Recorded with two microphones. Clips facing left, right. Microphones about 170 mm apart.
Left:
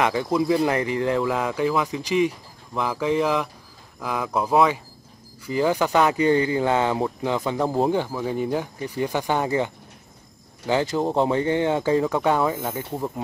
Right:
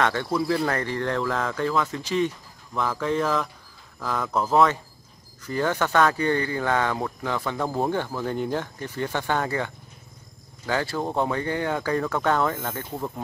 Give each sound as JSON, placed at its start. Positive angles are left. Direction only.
{"t": 0.0, "sound": "speech", "side_deg": 10}
{"t": 10.7, "sound": "speech", "side_deg": 20}